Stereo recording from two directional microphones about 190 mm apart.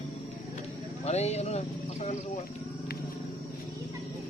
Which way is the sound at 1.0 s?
35° left (ahead or behind).